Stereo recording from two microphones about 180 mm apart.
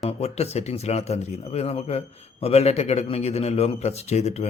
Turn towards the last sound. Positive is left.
turn(degrees=35)  # may be behind; listen again after turning